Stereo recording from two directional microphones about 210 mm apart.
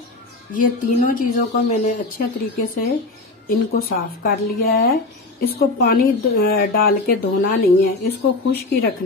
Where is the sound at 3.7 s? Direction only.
45° left (ahead or behind).